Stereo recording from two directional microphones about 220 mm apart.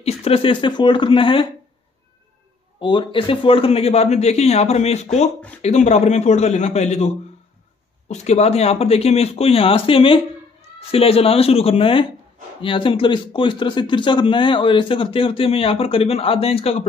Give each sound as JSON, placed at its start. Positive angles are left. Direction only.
{"t": 0.0, "sound": "speech", "side_deg": 25}
{"t": 2.8, "sound": "a man's voice", "side_deg": 20}